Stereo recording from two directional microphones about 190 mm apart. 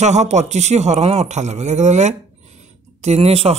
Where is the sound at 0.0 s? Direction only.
35° right (ahead or behind).